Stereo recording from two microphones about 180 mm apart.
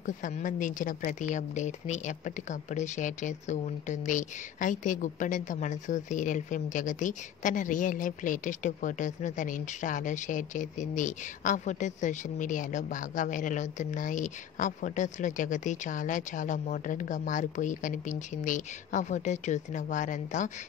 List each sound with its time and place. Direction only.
0.0 s a woman's voice: 45° left (ahead or behind)